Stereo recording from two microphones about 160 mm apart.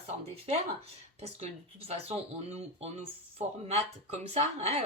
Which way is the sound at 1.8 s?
40° right (ahead or behind).